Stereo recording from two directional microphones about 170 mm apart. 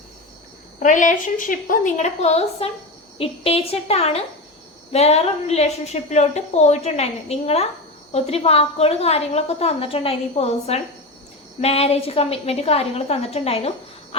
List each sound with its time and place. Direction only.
0.8 s a woman's voice: 50° left (ahead or behind)